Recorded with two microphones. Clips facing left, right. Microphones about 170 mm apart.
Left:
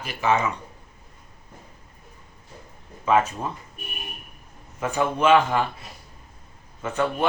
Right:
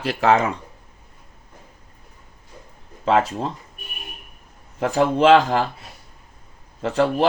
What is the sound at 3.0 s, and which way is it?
Speech, 85° right.